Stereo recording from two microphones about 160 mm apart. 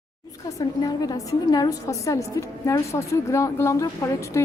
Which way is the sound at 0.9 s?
25° left (ahead or behind).